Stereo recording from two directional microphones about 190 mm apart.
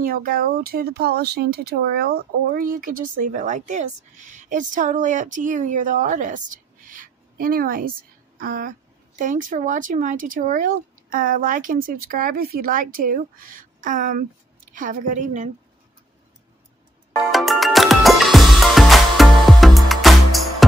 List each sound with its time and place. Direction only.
0.0 s speech: 50° right (ahead or behind)
17.3 s music: centre (ahead or behind)